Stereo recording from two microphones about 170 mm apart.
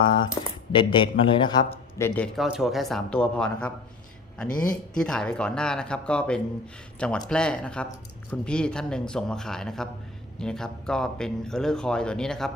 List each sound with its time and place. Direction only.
0.0 s speech: 30° left (ahead or behind)
2.0 s speech: 10° left (ahead or behind)